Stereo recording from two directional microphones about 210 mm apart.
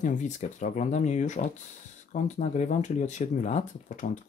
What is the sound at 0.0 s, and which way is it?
Speech, 35° left (ahead or behind).